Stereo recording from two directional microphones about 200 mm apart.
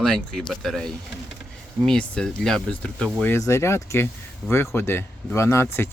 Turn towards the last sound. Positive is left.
turn(degrees=15)  # may be behind; listen again after turning